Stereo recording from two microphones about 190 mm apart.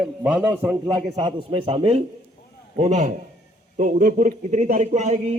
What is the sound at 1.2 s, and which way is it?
Speech, 25° right (ahead or behind).